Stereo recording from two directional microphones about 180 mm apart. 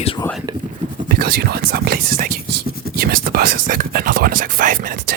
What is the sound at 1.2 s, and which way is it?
Speech, 60° right (ahead or behind).